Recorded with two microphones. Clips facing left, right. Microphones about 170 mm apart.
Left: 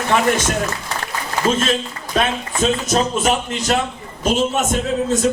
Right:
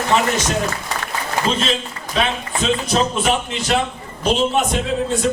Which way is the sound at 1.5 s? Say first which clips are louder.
Left 5 dB; 45° left (ahead or behind).